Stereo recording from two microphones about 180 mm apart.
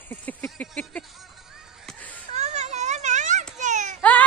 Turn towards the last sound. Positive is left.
turn(degrees=10)  # may be behind; listen again after turning